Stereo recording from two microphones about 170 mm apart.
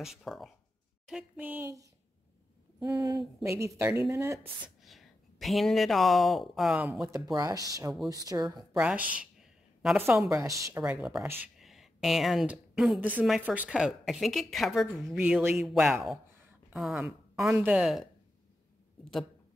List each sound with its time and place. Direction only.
0.0 s a woman's voice: centre (ahead or behind)
4.6 s speech: centre (ahead or behind)
7.3 s speech: 20° right (ahead or behind)
8.7 s a sound: 10° right (ahead or behind)
9.9 s a woman's voice: 15° right (ahead or behind)